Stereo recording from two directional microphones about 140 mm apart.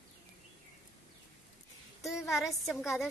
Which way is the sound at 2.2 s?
Centre (ahead or behind).